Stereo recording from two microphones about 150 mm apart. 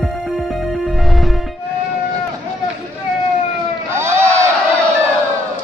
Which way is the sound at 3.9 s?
15° right (ahead or behind).